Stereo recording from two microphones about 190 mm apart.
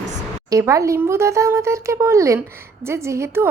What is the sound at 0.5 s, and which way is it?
A woman's voice, 15° right (ahead or behind).